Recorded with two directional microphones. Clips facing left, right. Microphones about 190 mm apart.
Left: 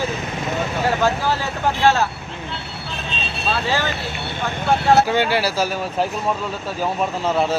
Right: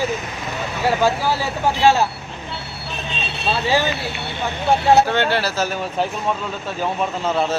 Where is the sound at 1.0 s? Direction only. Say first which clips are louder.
Right 1 dB; 10° right (ahead or behind).